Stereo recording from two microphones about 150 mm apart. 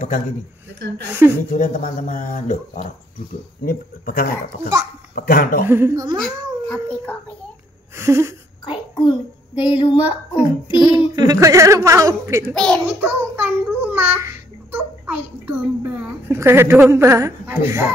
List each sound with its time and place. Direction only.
1.5 s speech: 60° left (ahead or behind)
5.7 s a woman's voice: 15° right (ahead or behind)
6.2 s speech: 5° left (ahead or behind)
7.9 s a woman's voice: 15° right (ahead or behind)
8.6 s female singing: 30° left (ahead or behind)
10.3 s a woman's voice: 15° right (ahead or behind)
12.5 s a child's voice: 5° left (ahead or behind)
12.8 s child singing: 15° right (ahead or behind)
16.0 s a woman's voice: 15° right (ahead or behind)